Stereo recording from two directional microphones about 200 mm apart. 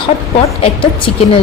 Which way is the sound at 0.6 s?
30° left (ahead or behind).